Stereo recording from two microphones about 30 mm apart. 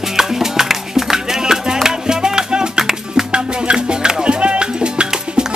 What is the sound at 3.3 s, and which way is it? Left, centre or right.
Music, right.